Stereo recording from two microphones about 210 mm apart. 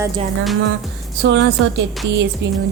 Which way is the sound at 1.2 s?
55° right (ahead or behind).